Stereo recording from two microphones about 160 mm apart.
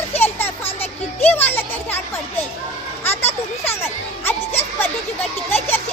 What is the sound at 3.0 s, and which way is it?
Music, 15° left (ahead or behind).